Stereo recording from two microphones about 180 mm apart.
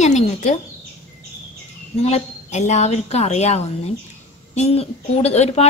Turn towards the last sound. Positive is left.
turn(degrees=35)  # may be behind; listen again after turning